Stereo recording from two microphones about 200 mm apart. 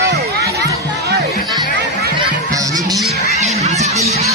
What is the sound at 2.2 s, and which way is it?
Music, 20° right (ahead or behind).